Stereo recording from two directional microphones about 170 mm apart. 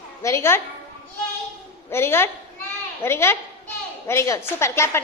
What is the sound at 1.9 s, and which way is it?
A woman's voice, 15° left (ahead or behind).